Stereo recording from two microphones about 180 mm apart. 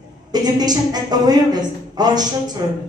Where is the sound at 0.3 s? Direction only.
20° right (ahead or behind).